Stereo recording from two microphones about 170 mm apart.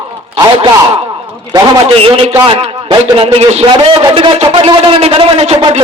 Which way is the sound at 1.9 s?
35° right (ahead or behind).